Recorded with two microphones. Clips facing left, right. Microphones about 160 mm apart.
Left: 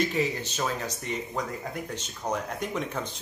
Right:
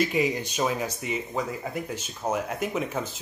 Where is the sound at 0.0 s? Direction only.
10° right (ahead or behind).